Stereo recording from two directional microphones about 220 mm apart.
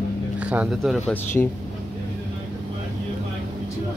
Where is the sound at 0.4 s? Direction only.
5° right (ahead or behind).